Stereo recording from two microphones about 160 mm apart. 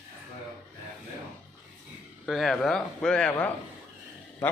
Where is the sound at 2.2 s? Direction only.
Centre (ahead or behind).